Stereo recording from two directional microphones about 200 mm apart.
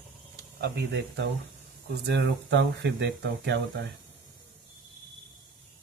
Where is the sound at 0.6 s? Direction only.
60° right (ahead or behind).